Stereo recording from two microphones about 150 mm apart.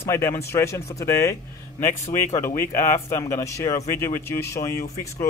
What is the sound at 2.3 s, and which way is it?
Speech, 20° left (ahead or behind).